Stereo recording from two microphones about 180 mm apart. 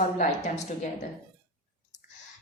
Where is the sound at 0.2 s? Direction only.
40° left (ahead or behind).